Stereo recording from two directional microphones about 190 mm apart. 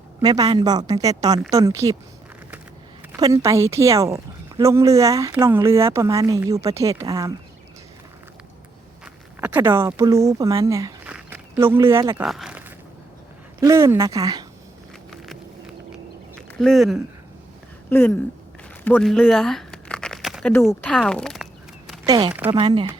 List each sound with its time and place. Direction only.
0.2 s a woman's voice: 20° right (ahead or behind)
3.1 s speech: 20° right (ahead or behind)
9.4 s speech: 10° right (ahead or behind)
11.1 s a sound: 10° right (ahead or behind)
12.2 s speech: centre (ahead or behind)
13.6 s speech: 15° right (ahead or behind)
15.1 s walk: centre (ahead or behind)
16.6 s speech: centre (ahead or behind)
17.8 s speech: 10° left (ahead or behind)
18.9 s a sound: 5° left (ahead or behind)
20.6 s speech: centre (ahead or behind)
22.0 s a woman's voice: 20° right (ahead or behind)